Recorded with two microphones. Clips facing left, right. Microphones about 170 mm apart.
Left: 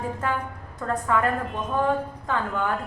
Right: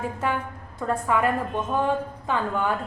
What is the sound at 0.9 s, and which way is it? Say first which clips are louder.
A woman's voice: right 1 dB; 15° right (ahead or behind).